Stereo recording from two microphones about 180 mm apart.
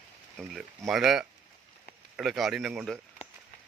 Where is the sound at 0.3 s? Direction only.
Centre (ahead or behind).